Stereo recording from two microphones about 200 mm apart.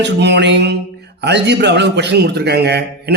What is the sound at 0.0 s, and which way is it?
A man's voice, 60° right (ahead or behind).